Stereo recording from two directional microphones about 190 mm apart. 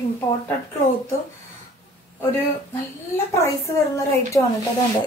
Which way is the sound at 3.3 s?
15° left (ahead or behind).